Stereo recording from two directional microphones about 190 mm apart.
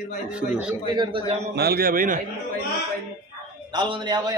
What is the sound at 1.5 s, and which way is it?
Speech, 55° right (ahead or behind).